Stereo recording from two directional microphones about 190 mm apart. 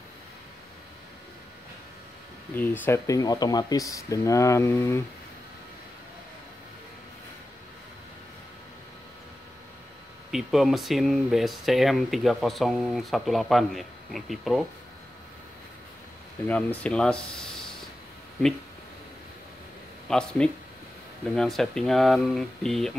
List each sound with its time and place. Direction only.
2.5 s speech: 10° left (ahead or behind)
10.3 s speech: centre (ahead or behind)
16.4 s speech: 5° left (ahead or behind)
20.1 s speech: 5° left (ahead or behind)